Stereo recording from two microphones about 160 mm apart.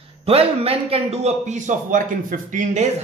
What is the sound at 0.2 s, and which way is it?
A man's voice, 35° right (ahead or behind).